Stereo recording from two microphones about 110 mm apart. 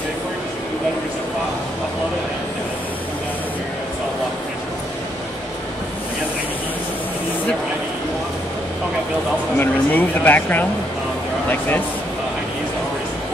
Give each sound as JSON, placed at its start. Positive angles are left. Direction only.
{"t": 9.6, "sound": "speech", "side_deg": 15}